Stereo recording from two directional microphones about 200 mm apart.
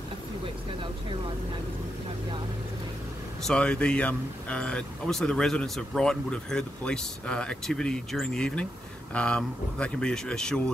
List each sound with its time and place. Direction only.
3.4 s speech: 5° left (ahead or behind)